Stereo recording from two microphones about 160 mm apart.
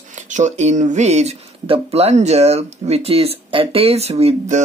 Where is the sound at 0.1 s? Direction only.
50° right (ahead or behind).